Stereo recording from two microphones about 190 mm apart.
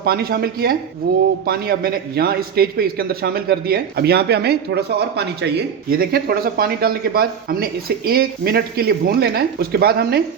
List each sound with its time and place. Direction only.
0.0 s a man's voice: 55° right (ahead or behind)